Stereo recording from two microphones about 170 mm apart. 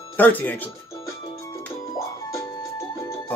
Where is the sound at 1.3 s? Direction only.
15° left (ahead or behind).